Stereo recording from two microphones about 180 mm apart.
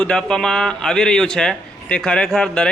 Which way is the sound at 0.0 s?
5° left (ahead or behind).